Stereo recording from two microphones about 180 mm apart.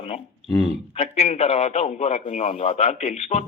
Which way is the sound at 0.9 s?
35° left (ahead or behind).